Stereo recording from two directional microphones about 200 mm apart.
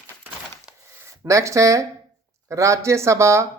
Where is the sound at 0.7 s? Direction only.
5° right (ahead or behind).